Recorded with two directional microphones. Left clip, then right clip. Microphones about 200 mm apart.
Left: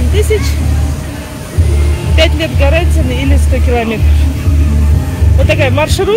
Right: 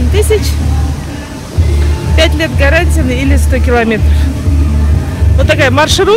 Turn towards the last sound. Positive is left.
turn(degrees=-20)  # may be behind; listen again after turning